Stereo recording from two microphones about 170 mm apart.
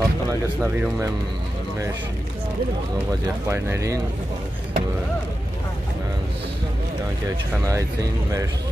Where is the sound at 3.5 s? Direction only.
15° right (ahead or behind).